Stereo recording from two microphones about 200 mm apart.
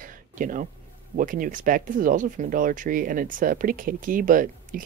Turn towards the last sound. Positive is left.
turn(degrees=-45)  # may be behind; listen again after turning